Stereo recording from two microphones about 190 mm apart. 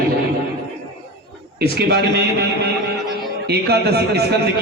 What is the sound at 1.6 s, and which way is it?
Speech, 60° right (ahead or behind).